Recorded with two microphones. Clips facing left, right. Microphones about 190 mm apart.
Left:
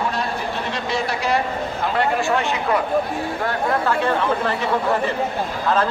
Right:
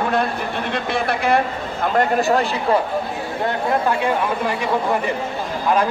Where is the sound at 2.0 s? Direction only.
40° right (ahead or behind).